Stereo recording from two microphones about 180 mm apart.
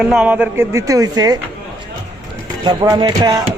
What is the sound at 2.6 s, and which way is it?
Speech, 25° right (ahead or behind).